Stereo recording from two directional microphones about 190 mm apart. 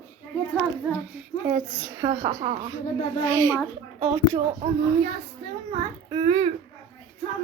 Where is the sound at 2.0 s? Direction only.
20° right (ahead or behind).